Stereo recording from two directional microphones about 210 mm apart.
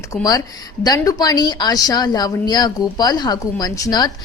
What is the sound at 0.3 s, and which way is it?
A woman's voice, 15° left (ahead or behind).